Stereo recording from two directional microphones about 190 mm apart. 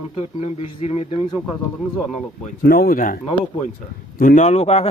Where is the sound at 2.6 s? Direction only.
50° left (ahead or behind).